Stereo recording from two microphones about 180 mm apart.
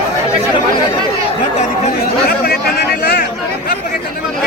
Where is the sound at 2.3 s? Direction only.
60° left (ahead or behind).